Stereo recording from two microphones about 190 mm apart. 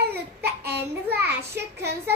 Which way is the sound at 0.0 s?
55° right (ahead or behind).